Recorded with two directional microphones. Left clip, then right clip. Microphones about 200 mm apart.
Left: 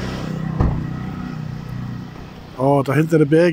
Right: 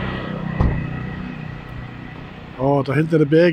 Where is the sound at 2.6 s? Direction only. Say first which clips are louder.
Left 2 dB; 10° left (ahead or behind).